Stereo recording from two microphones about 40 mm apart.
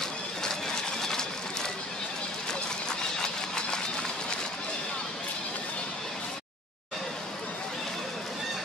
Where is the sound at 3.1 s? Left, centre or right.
Centre.